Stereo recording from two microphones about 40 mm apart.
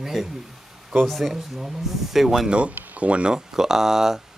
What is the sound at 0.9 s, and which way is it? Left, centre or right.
Speech, centre.